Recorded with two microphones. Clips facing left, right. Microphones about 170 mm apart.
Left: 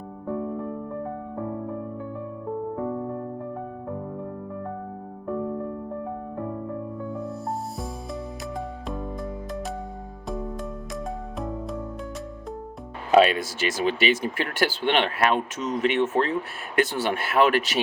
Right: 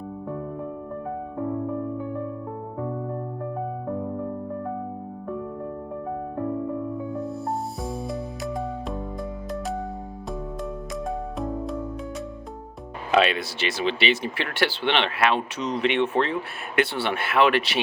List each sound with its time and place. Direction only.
11.3 s music: centre (ahead or behind)
13.1 s speech: 40° left (ahead or behind)